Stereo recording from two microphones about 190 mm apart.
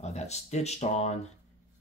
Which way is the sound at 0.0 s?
35° left (ahead or behind).